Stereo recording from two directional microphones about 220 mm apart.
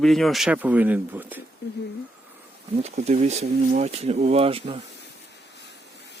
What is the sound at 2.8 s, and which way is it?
Speech, 30° right (ahead or behind).